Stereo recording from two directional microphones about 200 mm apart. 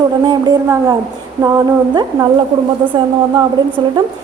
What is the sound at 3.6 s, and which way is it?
Speech, 25° right (ahead or behind).